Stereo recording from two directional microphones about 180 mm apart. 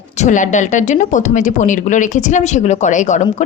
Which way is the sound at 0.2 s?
45° left (ahead or behind).